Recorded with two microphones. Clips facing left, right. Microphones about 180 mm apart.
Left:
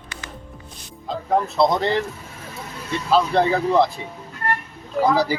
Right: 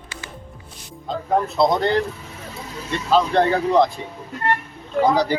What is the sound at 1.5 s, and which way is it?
Speech, centre (ahead or behind).